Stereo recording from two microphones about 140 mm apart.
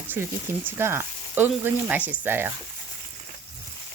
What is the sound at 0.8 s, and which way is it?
Speech, 15° right (ahead or behind).